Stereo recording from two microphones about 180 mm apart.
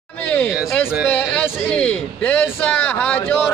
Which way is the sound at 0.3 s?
10° left (ahead or behind).